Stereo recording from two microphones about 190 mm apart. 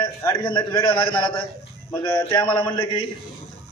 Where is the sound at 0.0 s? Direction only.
20° left (ahead or behind).